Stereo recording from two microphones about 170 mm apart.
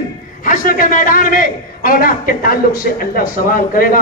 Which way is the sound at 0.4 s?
55° left (ahead or behind).